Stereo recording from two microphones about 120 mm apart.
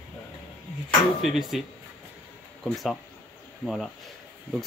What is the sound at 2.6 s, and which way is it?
Speech, centre (ahead or behind).